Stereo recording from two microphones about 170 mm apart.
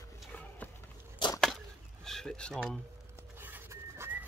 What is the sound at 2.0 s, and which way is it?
Speech, 5° left (ahead or behind).